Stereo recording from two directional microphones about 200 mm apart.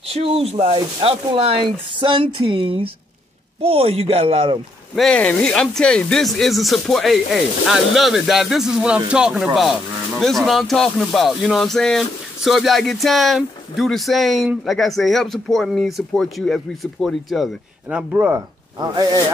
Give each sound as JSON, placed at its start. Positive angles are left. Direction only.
{"t": 0.1, "sound": "speech", "side_deg": -30}
{"t": 4.9, "sound": "speech", "side_deg": 5}